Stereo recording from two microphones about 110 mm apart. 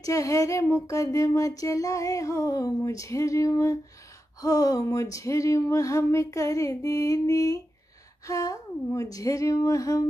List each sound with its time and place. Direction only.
0.0 s speech: 30° left (ahead or behind)